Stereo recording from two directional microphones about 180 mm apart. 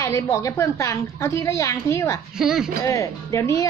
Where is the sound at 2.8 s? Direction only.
15° left (ahead or behind).